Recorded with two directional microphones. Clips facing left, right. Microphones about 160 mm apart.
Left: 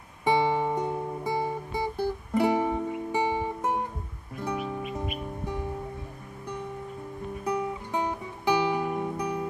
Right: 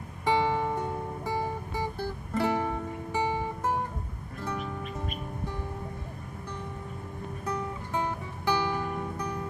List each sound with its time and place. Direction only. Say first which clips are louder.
0.2 s music: left 2 dB; 15° left (ahead or behind)
7.4 s music: left 4 dB; 15° left (ahead or behind)